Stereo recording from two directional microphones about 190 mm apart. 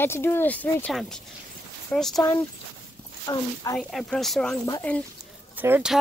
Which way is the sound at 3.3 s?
20° left (ahead or behind).